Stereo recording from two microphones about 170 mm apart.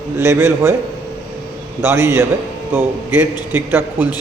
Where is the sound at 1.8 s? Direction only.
15° right (ahead or behind).